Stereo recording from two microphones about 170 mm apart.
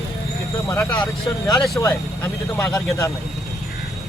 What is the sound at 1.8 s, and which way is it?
Speech, 15° left (ahead or behind).